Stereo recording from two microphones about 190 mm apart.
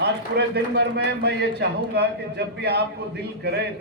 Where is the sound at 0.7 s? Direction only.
60° right (ahead or behind).